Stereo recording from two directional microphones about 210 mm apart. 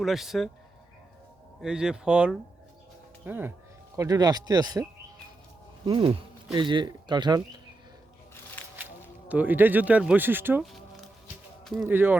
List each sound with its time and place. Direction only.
0.0 s speech: centre (ahead or behind)
1.6 s speech: 5° right (ahead or behind); by 7.4 s 20° right (ahead or behind)
9.3 s speech: 10° right (ahead or behind)
11.8 s speech: 10° right (ahead or behind)